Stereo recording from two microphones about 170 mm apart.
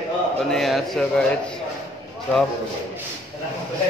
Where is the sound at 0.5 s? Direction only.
Centre (ahead or behind).